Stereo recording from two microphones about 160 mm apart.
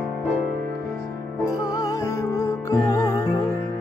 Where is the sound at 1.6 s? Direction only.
20° left (ahead or behind).